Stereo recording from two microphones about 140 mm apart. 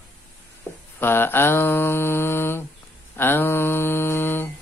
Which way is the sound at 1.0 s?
15° left (ahead or behind).